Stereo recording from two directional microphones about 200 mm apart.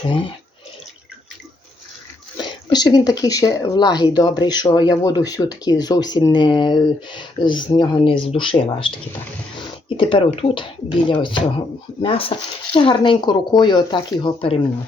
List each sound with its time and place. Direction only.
2.4 s speech: 20° left (ahead or behind)
10.0 s speech: 25° left (ahead or behind)